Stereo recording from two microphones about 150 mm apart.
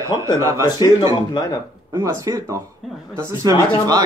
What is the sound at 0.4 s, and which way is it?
Speech, 20° right (ahead or behind).